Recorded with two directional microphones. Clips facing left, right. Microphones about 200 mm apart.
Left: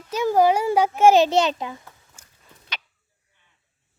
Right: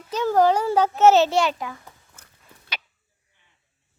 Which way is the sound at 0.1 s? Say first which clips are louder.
Left 1 dB; 10° left (ahead or behind).